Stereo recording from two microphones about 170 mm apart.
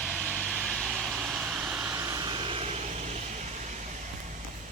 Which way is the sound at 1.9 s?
15° right (ahead or behind).